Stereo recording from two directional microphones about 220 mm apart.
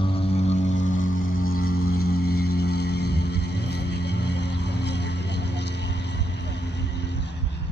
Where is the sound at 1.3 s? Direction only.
40° left (ahead or behind).